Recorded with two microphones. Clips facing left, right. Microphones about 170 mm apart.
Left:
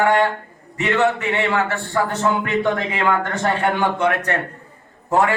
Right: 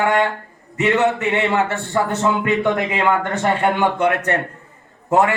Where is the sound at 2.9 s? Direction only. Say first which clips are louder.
Right 2 dB; 20° right (ahead or behind).